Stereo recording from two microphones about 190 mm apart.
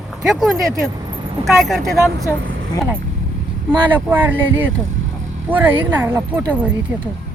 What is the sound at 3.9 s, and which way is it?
Speech, 10° right (ahead or behind).